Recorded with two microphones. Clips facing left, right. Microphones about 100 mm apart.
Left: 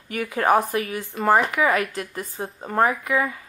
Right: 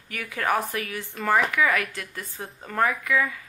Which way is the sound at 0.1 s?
30° left (ahead or behind).